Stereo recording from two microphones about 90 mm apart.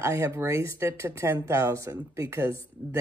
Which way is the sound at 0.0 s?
30° right (ahead or behind).